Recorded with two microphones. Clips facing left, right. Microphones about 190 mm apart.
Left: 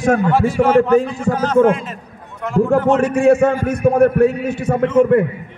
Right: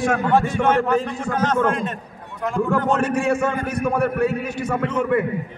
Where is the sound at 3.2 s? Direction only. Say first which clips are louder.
Left 8 dB; 50° left (ahead or behind).